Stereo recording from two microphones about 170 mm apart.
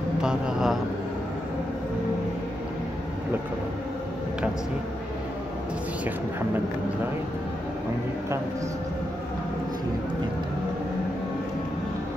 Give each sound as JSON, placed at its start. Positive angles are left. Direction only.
{"t": 0.2, "sound": "a man's voice", "side_deg": -5}